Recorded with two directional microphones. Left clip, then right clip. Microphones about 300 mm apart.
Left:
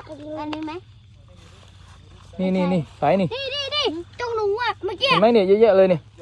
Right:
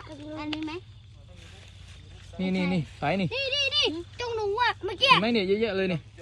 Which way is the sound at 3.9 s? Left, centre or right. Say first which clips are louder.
Left 6 dB; centre.